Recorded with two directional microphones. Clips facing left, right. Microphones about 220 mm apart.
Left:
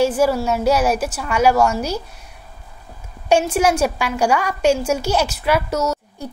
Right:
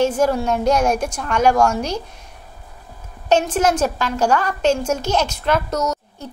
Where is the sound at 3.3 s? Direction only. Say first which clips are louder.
Left 1 dB; 10° left (ahead or behind).